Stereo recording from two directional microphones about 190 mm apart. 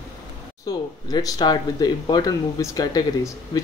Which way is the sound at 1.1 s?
20° left (ahead or behind).